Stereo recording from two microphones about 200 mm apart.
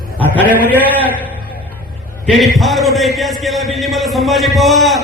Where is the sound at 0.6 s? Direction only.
10° left (ahead or behind).